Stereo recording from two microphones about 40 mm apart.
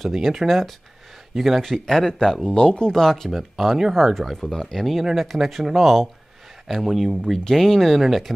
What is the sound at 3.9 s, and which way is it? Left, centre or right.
Speech, centre.